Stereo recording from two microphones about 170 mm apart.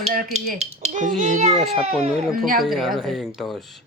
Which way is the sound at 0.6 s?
45° right (ahead or behind).